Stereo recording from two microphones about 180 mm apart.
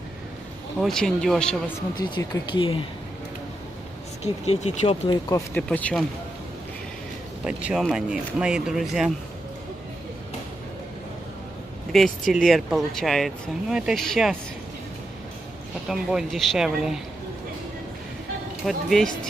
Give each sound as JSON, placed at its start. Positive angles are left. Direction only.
{"t": 0.7, "sound": "speech", "side_deg": 0}
{"t": 2.0, "sound": "speech", "side_deg": 25}
{"t": 4.2, "sound": "speech", "side_deg": 40}
{"t": 5.1, "sound": "speech", "side_deg": 15}
{"t": 5.6, "sound": "speech", "side_deg": 5}
{"t": 7.4, "sound": "speech", "side_deg": -5}
{"t": 11.9, "sound": "speech", "side_deg": 0}
{"t": 15.9, "sound": "speech", "side_deg": 0}
{"t": 18.7, "sound": "speech", "side_deg": 0}